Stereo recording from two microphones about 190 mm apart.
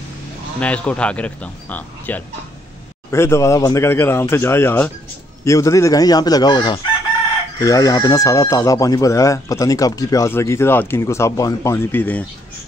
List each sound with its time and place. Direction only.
0.6 s speech: 5° left (ahead or behind)